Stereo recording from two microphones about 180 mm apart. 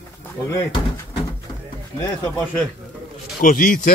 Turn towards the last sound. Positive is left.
turn(degrees=50)  # may be behind; listen again after turning